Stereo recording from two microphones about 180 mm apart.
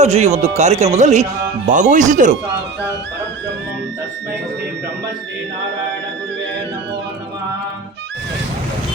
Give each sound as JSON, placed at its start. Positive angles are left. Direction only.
{"t": 0.0, "sound": "speech", "side_deg": -40}